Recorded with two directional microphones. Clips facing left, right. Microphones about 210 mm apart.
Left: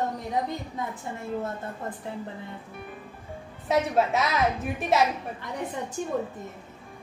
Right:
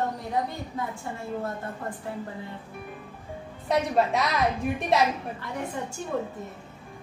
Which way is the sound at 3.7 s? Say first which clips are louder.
Even; centre (ahead or behind).